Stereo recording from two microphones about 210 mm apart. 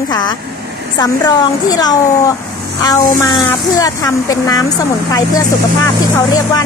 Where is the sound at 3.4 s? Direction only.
15° left (ahead or behind).